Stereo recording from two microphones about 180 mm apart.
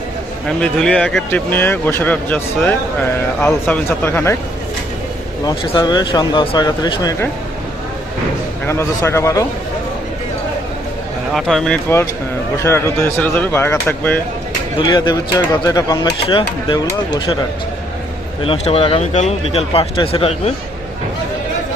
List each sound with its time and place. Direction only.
0.4 s speech: 5° left (ahead or behind)
5.5 s speech: 25° left (ahead or behind)
8.6 s speech: 15° left (ahead or behind)
11.3 s speech: centre (ahead or behind)
12.5 s speech: 15° left (ahead or behind)
14.8 s speech: 25° left (ahead or behind)
18.4 s speech: 35° left (ahead or behind)